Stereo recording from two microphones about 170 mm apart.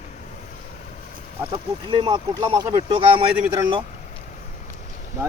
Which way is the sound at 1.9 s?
30° right (ahead or behind).